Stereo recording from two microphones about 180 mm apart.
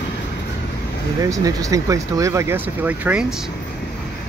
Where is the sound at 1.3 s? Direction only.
20° right (ahead or behind).